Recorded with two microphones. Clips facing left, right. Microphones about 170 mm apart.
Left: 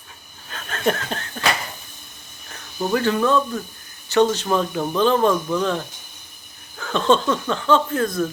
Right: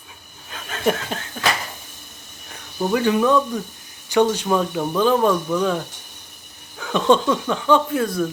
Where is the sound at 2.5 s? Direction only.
10° right (ahead or behind).